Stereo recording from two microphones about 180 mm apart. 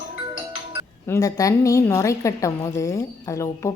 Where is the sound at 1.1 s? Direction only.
20° left (ahead or behind).